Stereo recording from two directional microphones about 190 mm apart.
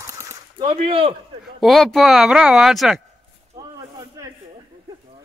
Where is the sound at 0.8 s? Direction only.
30° right (ahead or behind).